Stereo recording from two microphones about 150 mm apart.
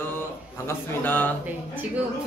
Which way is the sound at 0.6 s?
15° left (ahead or behind).